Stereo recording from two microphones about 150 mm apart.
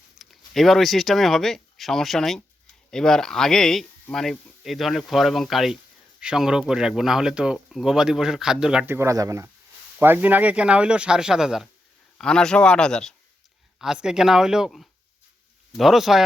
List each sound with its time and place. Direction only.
0.2 s speech: centre (ahead or behind)
9.0 s speech: 20° right (ahead or behind); by 16.2 s centre (ahead or behind)